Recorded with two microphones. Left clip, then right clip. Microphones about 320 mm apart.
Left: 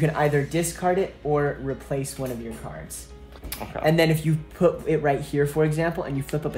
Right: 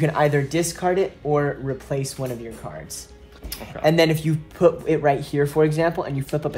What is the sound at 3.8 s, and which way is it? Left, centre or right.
Speech, centre.